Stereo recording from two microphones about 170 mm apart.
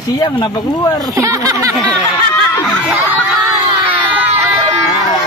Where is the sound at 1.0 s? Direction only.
20° right (ahead or behind).